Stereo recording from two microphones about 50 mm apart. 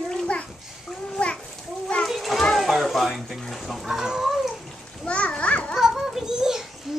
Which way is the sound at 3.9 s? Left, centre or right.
Centre.